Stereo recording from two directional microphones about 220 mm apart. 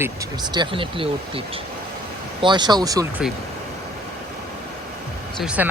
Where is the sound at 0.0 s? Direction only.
15° right (ahead or behind).